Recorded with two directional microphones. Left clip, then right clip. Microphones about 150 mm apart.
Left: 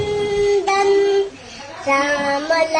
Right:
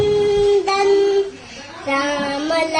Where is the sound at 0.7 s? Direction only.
15° left (ahead or behind).